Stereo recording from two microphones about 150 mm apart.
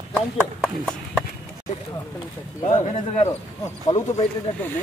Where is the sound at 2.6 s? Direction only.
55° left (ahead or behind).